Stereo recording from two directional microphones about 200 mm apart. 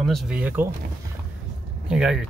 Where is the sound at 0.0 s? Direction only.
Centre (ahead or behind).